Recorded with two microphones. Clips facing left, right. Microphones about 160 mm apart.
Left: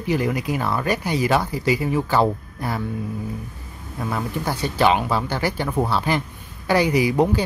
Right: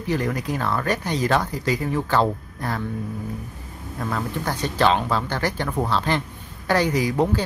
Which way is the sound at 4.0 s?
10° left (ahead or behind).